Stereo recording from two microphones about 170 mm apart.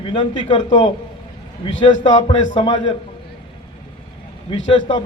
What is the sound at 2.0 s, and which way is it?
Speech, 30° left (ahead or behind).